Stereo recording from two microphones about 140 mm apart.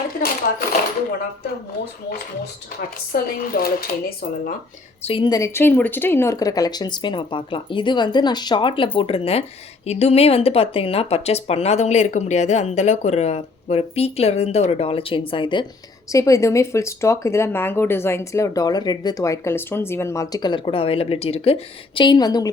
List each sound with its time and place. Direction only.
3.1 s speech: 90° left
5.0 s a woman's voice: 40° left (ahead or behind)
5.3 s a woman's voice: 20° left (ahead or behind); by 15.6 s 35° left (ahead or behind)
16.1 s speech: 20° left (ahead or behind)